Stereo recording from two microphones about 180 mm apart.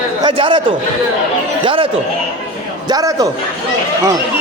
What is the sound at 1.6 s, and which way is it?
Speech, 30° right (ahead or behind).